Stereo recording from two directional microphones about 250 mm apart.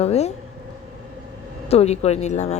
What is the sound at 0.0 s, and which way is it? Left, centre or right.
Speech, left.